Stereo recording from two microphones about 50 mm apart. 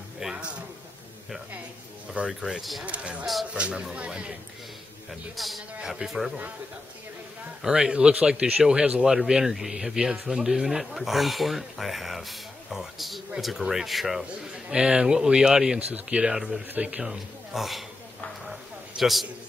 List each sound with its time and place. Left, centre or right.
0.2 s a sound: centre
2.2 s a man's voice: right
5.3 s a man's voice: centre
7.6 s a man's voice: centre
14.5 s a man's voice: centre
15.9 s a man's voice: right
16.3 s a man's voice: centre
16.7 s a man's voice: right
17.6 s speech: centre
18.4 s a sound: centre